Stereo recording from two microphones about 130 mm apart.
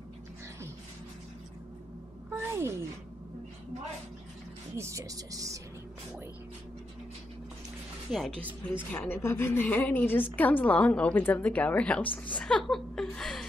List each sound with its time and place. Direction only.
2.3 s a sound: 20° right (ahead or behind)
4.7 s speech: 25° right (ahead or behind)
8.1 s speech: centre (ahead or behind)
8.6 s a woman's voice: 15° left (ahead or behind)